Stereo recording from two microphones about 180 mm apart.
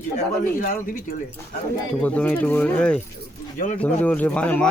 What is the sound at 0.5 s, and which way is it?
Speech, 50° left (ahead or behind).